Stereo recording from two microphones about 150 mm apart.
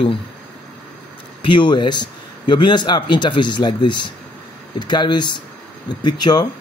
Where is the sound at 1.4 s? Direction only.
30° left (ahead or behind).